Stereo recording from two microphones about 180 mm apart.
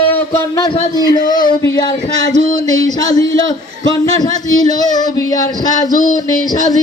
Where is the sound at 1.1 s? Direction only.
50° left (ahead or behind).